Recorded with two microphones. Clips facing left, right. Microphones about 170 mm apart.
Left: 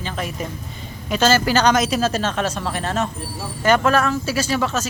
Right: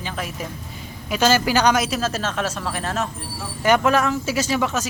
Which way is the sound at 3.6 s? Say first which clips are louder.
Left 1 dB; 15° right (ahead or behind).